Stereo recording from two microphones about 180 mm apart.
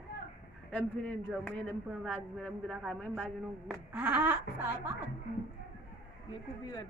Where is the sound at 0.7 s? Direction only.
5° left (ahead or behind); by 4.7 s 10° right (ahead or behind).